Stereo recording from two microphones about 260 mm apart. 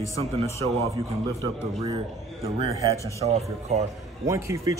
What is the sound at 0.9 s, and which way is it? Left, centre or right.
A man's voice, centre.